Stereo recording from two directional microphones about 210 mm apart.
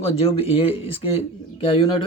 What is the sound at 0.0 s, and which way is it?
Speech, 30° left (ahead or behind).